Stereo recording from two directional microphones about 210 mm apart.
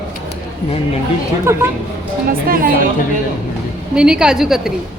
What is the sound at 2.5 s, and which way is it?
Speech, 45° right (ahead or behind).